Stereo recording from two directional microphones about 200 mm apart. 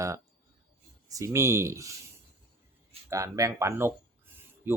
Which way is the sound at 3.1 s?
15° right (ahead or behind).